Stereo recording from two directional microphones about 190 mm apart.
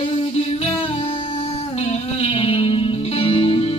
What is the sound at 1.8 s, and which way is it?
Music, 35° left (ahead or behind).